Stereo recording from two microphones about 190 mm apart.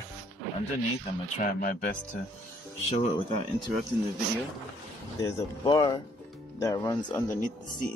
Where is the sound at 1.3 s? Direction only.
45° left (ahead or behind).